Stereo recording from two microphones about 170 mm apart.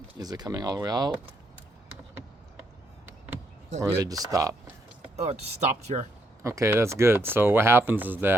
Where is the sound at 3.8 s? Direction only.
20° right (ahead or behind).